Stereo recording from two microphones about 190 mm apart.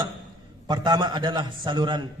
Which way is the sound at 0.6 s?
20° right (ahead or behind).